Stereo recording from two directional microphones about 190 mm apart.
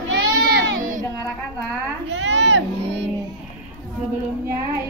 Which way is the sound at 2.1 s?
70° right (ahead or behind).